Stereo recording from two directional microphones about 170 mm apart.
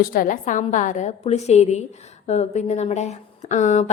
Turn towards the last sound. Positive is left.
turn(degrees=45)  # may be behind; listen again after turning